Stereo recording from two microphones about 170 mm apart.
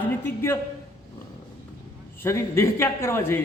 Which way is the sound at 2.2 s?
15° left (ahead or behind).